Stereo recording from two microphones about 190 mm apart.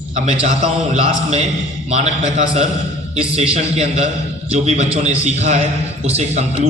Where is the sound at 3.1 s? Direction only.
30° right (ahead or behind).